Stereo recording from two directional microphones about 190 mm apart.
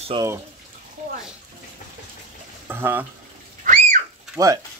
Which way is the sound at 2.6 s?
10° right (ahead or behind).